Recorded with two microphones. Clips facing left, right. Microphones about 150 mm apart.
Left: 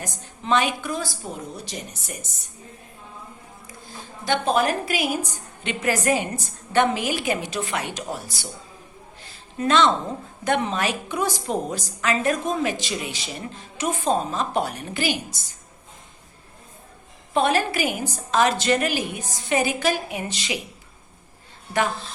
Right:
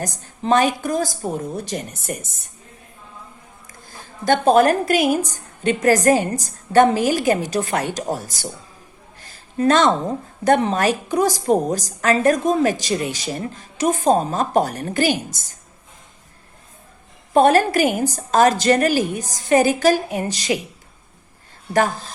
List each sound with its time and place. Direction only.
0.0 s a woman's voice: 40° right (ahead or behind)
4.3 s a woman's voice: 45° right (ahead or behind)
9.2 s a sound: 45° right (ahead or behind)
10.4 s a woman's voice: 40° right (ahead or behind)
17.3 s a woman's voice: 45° right (ahead or behind)
21.7 s a woman's voice: 40° right (ahead or behind)